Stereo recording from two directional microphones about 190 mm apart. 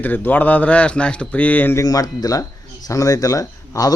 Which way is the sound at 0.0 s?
10° left (ahead or behind).